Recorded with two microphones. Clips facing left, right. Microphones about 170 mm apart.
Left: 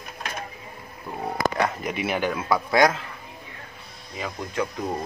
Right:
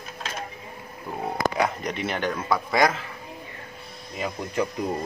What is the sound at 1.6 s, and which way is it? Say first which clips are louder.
A man's voice: even; 5° left (ahead or behind).